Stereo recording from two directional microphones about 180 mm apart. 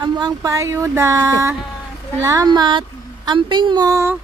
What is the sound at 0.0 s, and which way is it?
Speech, 25° right (ahead or behind).